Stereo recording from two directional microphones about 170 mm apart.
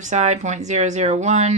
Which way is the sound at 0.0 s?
45° right (ahead or behind).